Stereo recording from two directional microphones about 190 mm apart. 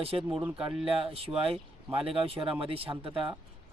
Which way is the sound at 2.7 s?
30° right (ahead or behind).